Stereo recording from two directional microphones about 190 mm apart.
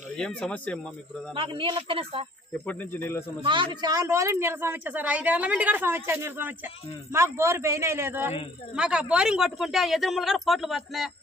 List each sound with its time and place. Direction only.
0.1 s speech: 5° left (ahead or behind)
1.3 s speech: 25° right (ahead or behind)
2.5 s speech: 10° left (ahead or behind)
3.4 s speech: 25° right (ahead or behind); by 11.1 s centre (ahead or behind)